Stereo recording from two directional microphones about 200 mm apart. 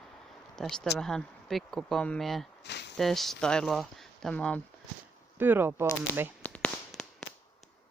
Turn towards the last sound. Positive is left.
turn(degrees=5)  # may be behind; listen again after turning